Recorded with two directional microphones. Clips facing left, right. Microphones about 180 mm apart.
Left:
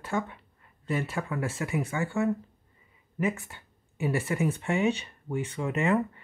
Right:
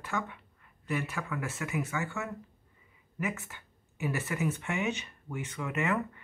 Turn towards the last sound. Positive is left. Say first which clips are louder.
# left 5 dB
turn(degrees=30)  # may be behind; listen again after turning